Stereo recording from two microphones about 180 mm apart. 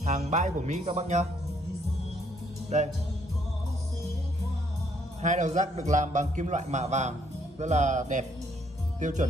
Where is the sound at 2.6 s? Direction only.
40° right (ahead or behind).